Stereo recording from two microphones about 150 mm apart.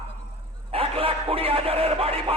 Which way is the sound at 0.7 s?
40° right (ahead or behind).